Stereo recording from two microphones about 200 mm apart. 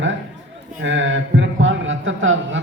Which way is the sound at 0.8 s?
70° right (ahead or behind).